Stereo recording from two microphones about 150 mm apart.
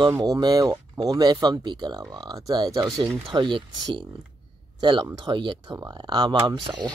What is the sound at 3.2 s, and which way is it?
Speech, 30° right (ahead or behind).